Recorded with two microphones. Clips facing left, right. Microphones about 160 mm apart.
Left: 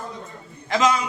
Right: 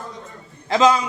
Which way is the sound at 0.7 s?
30° right (ahead or behind).